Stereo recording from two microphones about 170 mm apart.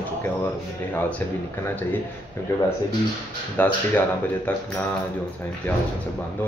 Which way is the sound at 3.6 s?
10° left (ahead or behind).